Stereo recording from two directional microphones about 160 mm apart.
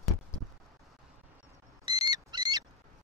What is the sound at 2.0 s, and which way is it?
Owl, 25° right (ahead or behind).